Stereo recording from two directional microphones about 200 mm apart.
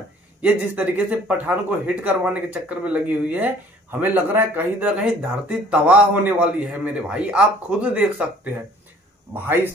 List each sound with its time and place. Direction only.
0.4 s speech: 5° right (ahead or behind)